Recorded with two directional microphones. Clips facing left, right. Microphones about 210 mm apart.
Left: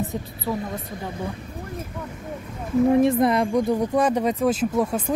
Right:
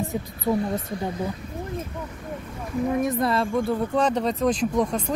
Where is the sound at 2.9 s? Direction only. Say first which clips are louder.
Left 4 dB; 25° left (ahead or behind).